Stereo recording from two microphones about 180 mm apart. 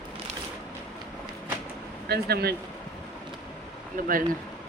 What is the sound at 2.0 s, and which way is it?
Speech, 65° right (ahead or behind).